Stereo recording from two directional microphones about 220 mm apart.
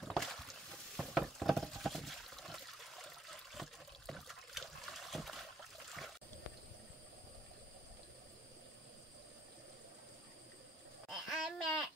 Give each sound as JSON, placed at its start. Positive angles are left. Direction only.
{"t": 0.0, "sound": "a sound", "side_deg": 0}
{"t": 4.1, "sound": "trickle", "side_deg": 0}
{"t": 11.1, "sound": "babbling", "side_deg": 0}